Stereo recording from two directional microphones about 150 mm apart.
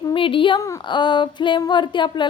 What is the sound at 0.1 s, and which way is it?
A woman's voice, 35° left (ahead or behind).